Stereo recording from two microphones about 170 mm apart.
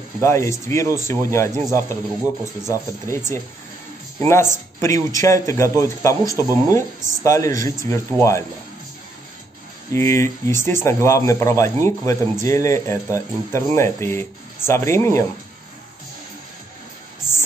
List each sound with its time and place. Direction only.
0.2 s speech: 15° left (ahead or behind)
9.9 s speech: 15° left (ahead or behind)